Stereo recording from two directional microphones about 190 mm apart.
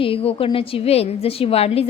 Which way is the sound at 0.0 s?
30° left (ahead or behind).